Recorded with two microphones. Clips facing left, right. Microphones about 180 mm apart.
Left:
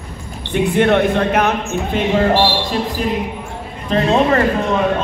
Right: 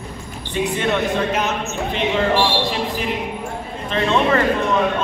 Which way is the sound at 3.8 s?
40° left (ahead or behind).